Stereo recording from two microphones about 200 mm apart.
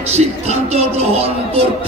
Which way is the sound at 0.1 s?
30° right (ahead or behind).